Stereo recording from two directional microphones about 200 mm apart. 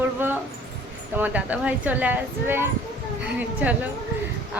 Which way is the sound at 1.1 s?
10° right (ahead or behind).